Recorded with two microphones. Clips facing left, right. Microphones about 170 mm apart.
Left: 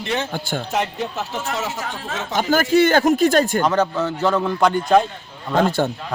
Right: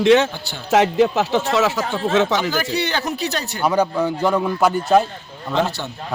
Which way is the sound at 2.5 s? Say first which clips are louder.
Left 7 dB; 50° left (ahead or behind).